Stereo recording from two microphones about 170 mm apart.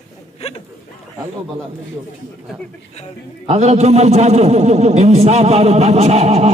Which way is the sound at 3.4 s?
40° right (ahead or behind).